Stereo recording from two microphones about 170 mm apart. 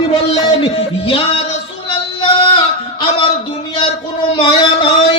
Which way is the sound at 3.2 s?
30° left (ahead or behind).